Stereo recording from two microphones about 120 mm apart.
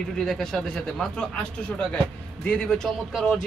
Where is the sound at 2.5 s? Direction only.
5° left (ahead or behind).